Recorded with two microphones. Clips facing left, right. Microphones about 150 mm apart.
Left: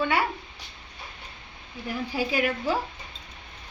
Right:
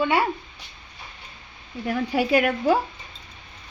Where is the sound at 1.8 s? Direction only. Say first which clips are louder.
Right 6 dB; 65° right (ahead or behind).